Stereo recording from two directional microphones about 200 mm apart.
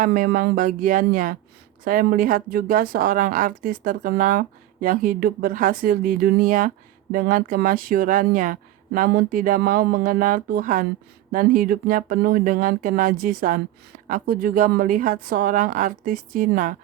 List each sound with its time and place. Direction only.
0.0 s speech: 45° right (ahead or behind)